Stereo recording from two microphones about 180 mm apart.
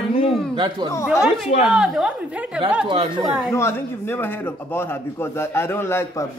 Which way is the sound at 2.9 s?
20° right (ahead or behind).